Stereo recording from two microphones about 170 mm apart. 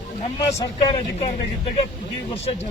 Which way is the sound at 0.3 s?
25° left (ahead or behind).